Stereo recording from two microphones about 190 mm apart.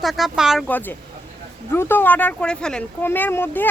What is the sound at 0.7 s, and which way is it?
Speech, 10° left (ahead or behind).